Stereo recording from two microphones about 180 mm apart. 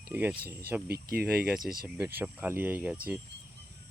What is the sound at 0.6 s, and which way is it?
Speech, 10° right (ahead or behind).